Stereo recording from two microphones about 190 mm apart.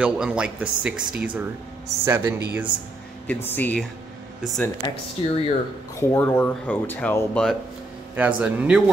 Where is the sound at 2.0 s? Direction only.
10° right (ahead or behind).